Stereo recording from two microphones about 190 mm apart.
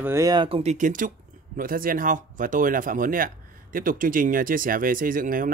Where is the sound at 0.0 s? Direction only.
15° right (ahead or behind).